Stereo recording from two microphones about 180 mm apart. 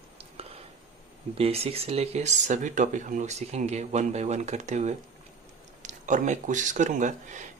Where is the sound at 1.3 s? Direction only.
35° right (ahead or behind).